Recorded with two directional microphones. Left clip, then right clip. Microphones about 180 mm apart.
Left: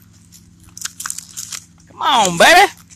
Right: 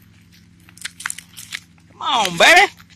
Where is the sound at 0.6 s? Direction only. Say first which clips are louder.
Even; 25° left (ahead or behind).